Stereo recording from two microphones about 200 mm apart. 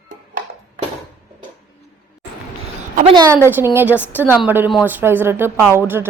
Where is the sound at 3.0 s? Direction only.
20° right (ahead or behind).